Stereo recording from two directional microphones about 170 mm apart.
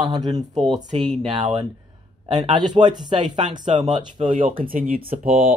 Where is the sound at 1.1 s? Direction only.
40° right (ahead or behind).